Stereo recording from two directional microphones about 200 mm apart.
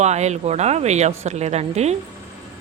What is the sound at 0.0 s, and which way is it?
Speech, 35° right (ahead or behind).